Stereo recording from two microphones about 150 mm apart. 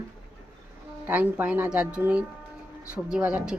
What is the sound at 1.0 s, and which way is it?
Speech, 10° right (ahead or behind).